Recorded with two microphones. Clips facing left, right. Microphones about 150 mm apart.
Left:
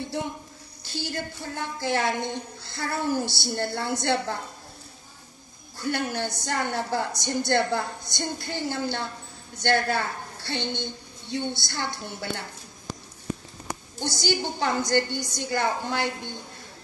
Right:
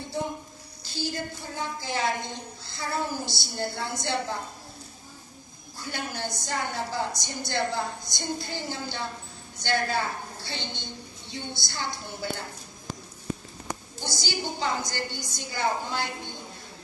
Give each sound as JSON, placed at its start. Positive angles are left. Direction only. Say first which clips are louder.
{"t": 0.8, "sound": "a woman's voice", "louder": "even", "side_deg": 60}
{"t": 5.8, "sound": "a woman's voice", "louder": "left 6 dB", "side_deg": 60}
{"t": 14.0, "sound": "a woman's voice", "louder": "left 5 dB", "side_deg": 60}